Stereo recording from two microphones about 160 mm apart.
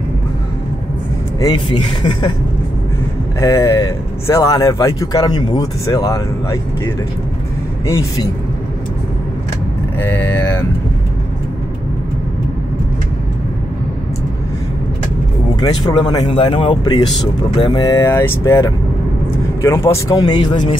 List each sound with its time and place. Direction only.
1.4 s speech: 30° left (ahead or behind)
3.3 s speech: 20° left (ahead or behind)
7.8 s speech: 20° left (ahead or behind)
9.9 s speech: 10° left (ahead or behind)
15.6 s speech: 25° left (ahead or behind)